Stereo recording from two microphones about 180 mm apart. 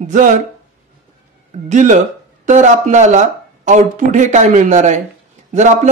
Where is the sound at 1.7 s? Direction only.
40° right (ahead or behind).